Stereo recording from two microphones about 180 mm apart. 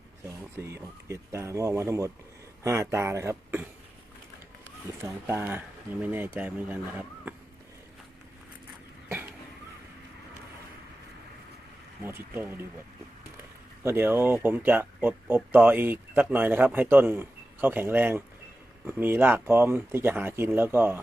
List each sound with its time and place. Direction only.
0.2 s a man's voice: 15° right (ahead or behind)
5.0 s a man's voice: 15° right (ahead or behind)
12.3 s a man's voice: 10° right (ahead or behind)
13.8 s a man's voice: 15° right (ahead or behind)